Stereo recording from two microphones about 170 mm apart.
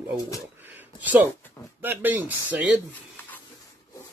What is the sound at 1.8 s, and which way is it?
Speech, 10° right (ahead or behind).